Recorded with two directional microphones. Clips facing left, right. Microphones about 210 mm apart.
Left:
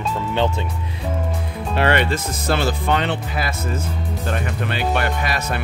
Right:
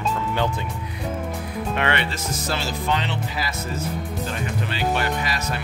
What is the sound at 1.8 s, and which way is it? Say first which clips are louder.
Speech: left 8 dB; 45° left (ahead or behind).